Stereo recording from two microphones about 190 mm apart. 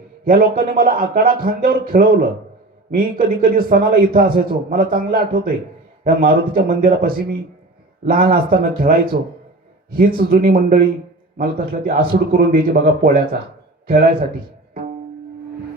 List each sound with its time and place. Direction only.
0.3 s a man's voice: 50° right (ahead or behind)